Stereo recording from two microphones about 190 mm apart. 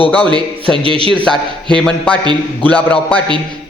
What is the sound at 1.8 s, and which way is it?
A man's voice, 5° left (ahead or behind).